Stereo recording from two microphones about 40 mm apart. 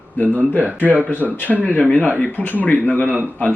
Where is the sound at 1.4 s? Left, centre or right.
Left.